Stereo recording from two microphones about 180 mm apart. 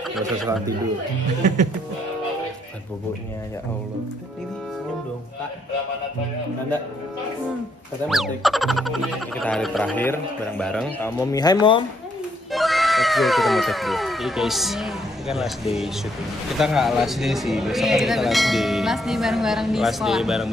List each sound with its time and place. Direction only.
0.2 s speech: 20° right (ahead or behind)
8.1 s speech: centre (ahead or behind); by 11.8 s 25° left (ahead or behind)
12.5 s speech: centre (ahead or behind)